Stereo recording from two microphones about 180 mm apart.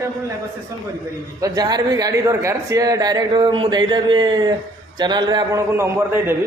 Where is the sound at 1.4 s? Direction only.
20° right (ahead or behind).